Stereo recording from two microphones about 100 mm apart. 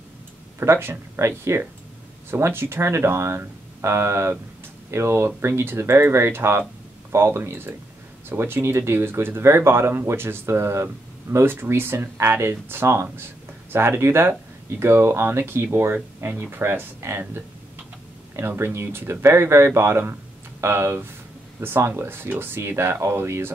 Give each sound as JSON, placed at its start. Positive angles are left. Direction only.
{"t": 0.6, "sound": "speech", "side_deg": -25}